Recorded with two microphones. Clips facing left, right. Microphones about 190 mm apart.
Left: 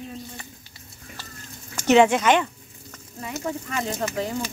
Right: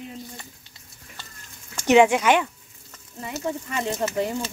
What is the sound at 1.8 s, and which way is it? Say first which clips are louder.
Speech: even; 15° right (ahead or behind).